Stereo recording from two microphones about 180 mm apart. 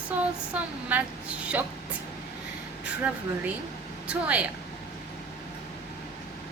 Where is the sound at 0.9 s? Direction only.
10° right (ahead or behind).